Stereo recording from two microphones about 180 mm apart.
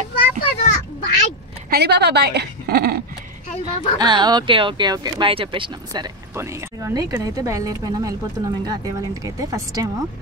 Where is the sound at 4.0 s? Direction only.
25° right (ahead or behind).